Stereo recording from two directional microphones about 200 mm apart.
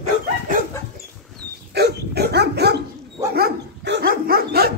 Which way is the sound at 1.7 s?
55° right (ahead or behind).